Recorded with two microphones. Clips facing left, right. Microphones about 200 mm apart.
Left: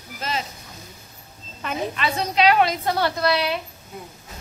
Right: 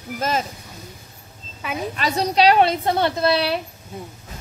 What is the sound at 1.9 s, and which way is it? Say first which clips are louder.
A woman's voice: right 5 dB; 40° right (ahead or behind).